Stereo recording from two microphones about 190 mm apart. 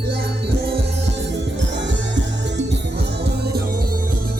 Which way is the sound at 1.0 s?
70° right (ahead or behind).